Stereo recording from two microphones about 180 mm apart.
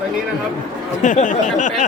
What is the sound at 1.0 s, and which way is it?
Speech, 45° left (ahead or behind).